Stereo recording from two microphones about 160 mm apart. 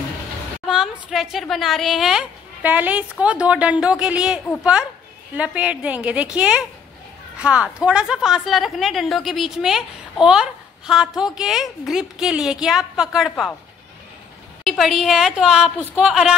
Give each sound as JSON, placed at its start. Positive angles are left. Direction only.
{"t": 0.7, "sound": "a woman's voice", "side_deg": 0}
{"t": 14.6, "sound": "a woman's voice", "side_deg": 0}